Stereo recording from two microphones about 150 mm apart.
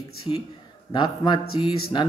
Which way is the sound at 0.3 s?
30° left (ahead or behind).